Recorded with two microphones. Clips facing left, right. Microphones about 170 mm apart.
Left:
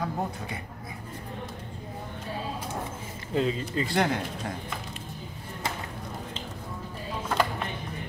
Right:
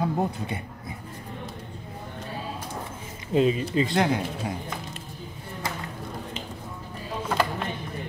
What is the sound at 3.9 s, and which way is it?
Speech, centre (ahead or behind).